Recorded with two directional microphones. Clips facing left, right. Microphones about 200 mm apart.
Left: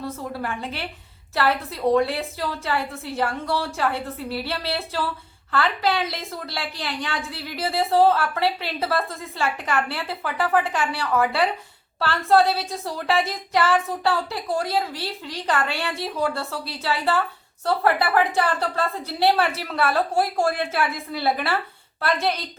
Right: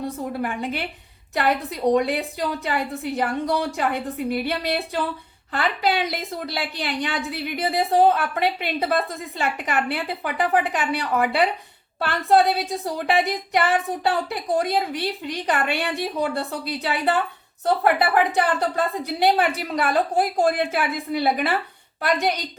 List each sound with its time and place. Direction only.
0.3 s a woman's voice: 15° right (ahead or behind)